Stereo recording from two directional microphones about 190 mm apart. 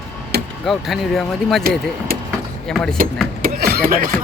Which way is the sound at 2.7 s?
5° left (ahead or behind).